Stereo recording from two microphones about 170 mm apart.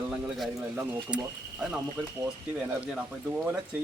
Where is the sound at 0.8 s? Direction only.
10° right (ahead or behind).